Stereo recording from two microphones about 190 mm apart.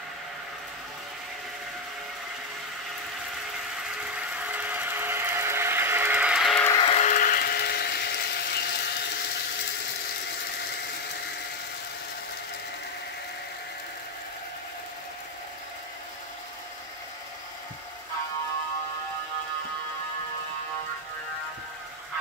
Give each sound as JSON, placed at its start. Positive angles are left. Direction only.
{"t": 4.0, "sound": "ratchet", "side_deg": -5}
{"t": 6.8, "sound": "a sound", "side_deg": 30}
{"t": 7.1, "sound": "ratchet", "side_deg": 45}